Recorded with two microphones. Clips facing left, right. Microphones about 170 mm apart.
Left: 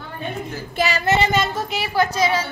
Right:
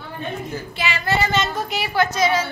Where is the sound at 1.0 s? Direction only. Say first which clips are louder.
Left 1 dB; 25° left (ahead or behind).